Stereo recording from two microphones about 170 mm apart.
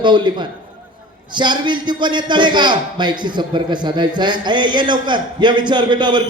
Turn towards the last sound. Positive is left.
turn(degrees=-25)  # may be behind; listen again after turning